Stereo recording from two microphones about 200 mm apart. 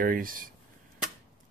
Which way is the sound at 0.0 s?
45° right (ahead or behind).